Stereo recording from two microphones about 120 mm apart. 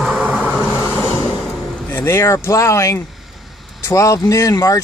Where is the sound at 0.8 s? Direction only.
20° left (ahead or behind).